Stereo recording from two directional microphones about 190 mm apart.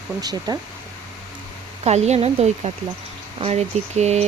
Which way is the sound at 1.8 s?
35° right (ahead or behind).